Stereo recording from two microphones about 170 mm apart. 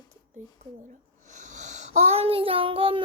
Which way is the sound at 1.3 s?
45° right (ahead or behind).